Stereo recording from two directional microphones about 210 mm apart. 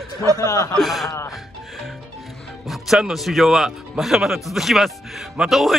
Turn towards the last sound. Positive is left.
turn(degrees=0)  # may be behind; listen again after turning